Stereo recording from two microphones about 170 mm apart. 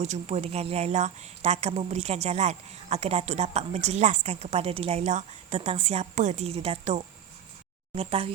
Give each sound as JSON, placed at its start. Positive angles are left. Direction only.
{"t": 0.0, "sound": "speech", "side_deg": -40}